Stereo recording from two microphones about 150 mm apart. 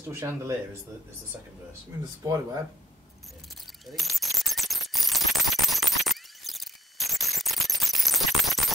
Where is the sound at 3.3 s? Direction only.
Centre (ahead or behind).